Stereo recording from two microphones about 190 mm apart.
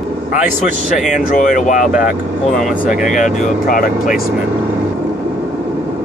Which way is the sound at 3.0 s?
40° left (ahead or behind).